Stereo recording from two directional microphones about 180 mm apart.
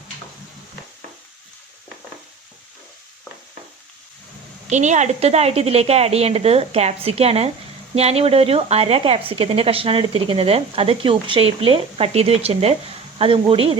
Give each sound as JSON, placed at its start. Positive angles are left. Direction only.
{"t": 4.7, "sound": "speech", "side_deg": -40}